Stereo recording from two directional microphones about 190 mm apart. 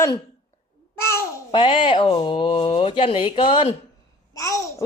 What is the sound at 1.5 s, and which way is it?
Speech, 25° left (ahead or behind).